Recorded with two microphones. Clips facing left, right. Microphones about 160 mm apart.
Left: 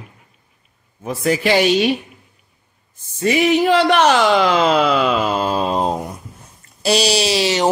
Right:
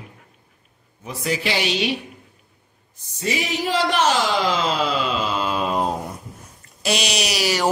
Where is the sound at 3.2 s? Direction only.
60° left (ahead or behind); by 7.7 s 25° left (ahead or behind).